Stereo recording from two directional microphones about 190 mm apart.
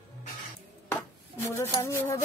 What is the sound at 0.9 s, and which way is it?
Chopping, 15° left (ahead or behind).